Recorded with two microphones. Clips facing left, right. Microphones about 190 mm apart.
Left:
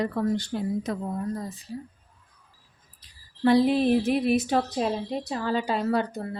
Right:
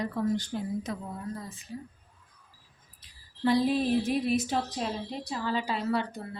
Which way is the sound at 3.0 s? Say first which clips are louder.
Left 1 dB; 40° left (ahead or behind).